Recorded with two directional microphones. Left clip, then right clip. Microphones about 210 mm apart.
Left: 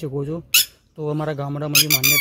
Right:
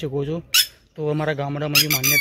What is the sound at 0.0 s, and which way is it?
Speech, 20° left (ahead or behind).